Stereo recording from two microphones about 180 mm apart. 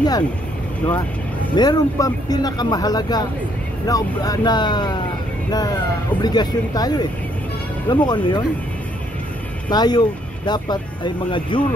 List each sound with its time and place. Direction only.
1.5 s speech: 20° left (ahead or behind)
9.7 s speech: 25° left (ahead or behind)